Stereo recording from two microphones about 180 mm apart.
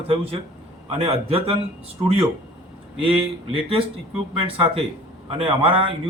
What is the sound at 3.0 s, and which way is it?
A man's voice, 30° right (ahead or behind).